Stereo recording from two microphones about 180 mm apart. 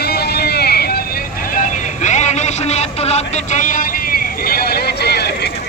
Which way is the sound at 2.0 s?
40° left (ahead or behind).